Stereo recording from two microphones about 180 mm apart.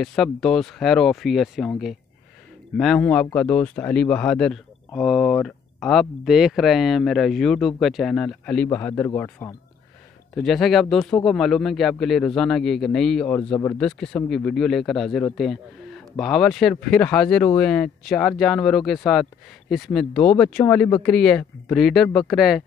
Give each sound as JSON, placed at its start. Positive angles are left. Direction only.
{"t": 0.0, "sound": "speech", "side_deg": 0}
{"t": 10.3, "sound": "speech", "side_deg": 0}